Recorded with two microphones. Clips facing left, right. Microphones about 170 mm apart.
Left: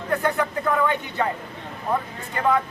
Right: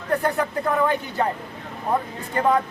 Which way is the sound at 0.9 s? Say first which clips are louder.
Right 1 dB; 35° right (ahead or behind).